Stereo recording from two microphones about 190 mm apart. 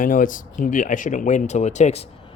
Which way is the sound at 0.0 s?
45° left (ahead or behind).